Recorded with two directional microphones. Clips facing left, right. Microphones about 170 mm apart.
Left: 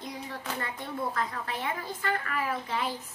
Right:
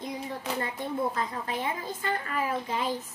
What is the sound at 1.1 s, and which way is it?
A woman's voice, 20° right (ahead or behind).